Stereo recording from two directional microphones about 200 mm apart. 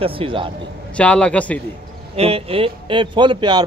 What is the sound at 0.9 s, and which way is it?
Speech, 5° left (ahead or behind).